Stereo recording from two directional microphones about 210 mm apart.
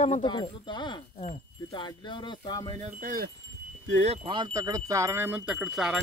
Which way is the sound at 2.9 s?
40° right (ahead or behind).